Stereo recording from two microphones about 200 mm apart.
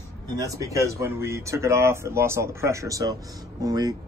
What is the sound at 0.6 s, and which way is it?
Speech, 15° right (ahead or behind).